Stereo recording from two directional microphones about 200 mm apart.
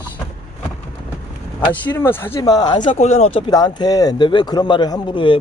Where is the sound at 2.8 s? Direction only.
35° left (ahead or behind).